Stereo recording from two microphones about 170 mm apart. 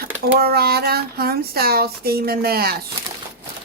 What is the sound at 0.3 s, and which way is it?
Speech, 65° right (ahead or behind).